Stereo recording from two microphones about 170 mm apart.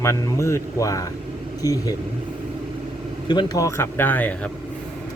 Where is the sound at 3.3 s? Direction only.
25° left (ahead or behind).